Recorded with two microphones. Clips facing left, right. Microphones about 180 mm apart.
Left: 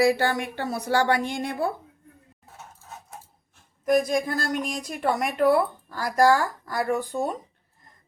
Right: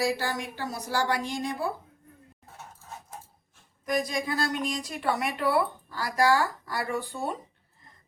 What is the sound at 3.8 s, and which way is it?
Speech, 50° left (ahead or behind).